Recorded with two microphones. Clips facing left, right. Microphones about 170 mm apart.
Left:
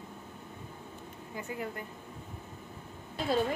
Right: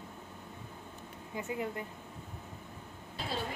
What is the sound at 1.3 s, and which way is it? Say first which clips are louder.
Speech: right 2 dB; 20° right (ahead or behind).